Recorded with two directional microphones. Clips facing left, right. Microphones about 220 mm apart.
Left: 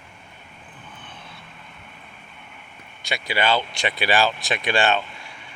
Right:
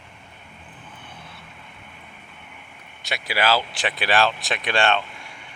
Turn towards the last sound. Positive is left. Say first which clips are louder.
# left 1 dB
turn(degrees=0)  # may be behind; listen again after turning